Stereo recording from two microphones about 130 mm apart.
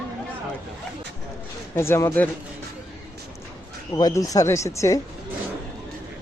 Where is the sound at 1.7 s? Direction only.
20° left (ahead or behind).